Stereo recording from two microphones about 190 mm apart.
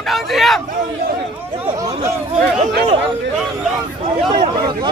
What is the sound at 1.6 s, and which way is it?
Chatter, 25° right (ahead or behind).